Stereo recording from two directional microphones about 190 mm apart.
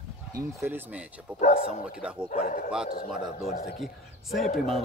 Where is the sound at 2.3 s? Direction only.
45° left (ahead or behind).